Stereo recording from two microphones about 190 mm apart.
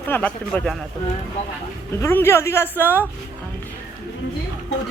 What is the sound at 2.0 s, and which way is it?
Speech, 15° left (ahead or behind).